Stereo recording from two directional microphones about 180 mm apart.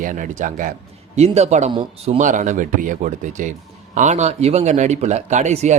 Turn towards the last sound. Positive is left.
turn(degrees=-40)  # may be behind; listen again after turning